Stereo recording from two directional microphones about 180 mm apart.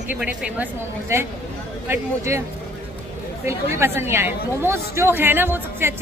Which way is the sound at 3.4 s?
15° right (ahead or behind).